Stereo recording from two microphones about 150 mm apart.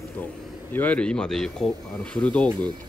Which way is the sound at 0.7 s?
10° left (ahead or behind).